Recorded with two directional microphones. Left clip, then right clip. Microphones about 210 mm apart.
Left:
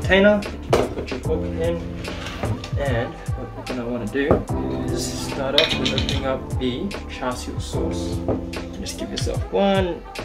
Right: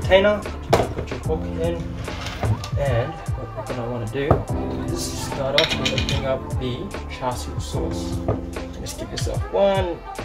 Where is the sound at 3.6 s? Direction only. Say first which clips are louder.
Left 2 dB; centre (ahead or behind).